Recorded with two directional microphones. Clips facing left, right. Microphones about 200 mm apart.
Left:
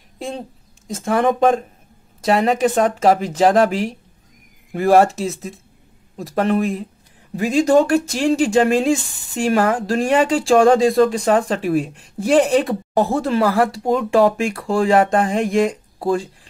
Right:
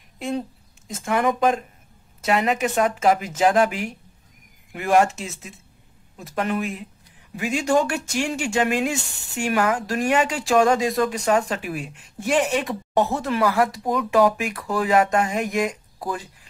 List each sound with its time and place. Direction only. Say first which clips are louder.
0.8 s speech: left 4 dB; 30° left (ahead or behind)